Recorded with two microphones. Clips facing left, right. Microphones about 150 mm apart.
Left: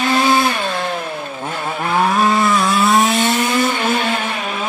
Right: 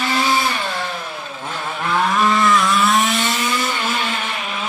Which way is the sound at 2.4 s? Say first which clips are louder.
Left 1 dB; 35° left (ahead or behind).